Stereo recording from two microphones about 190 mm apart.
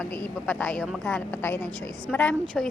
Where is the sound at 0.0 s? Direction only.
10° left (ahead or behind).